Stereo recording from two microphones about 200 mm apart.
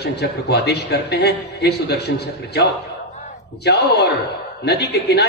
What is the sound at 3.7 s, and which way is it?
A man's voice, 55° left (ahead or behind).